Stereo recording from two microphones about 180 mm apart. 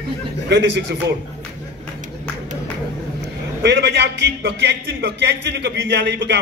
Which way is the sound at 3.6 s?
70° right (ahead or behind).